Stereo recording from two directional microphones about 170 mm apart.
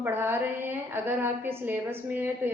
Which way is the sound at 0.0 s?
15° right (ahead or behind).